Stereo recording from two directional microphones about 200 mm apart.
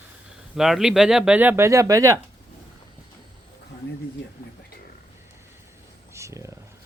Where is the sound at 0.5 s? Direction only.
Centre (ahead or behind).